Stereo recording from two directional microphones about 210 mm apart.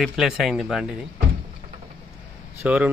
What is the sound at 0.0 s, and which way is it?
Speech, centre (ahead or behind).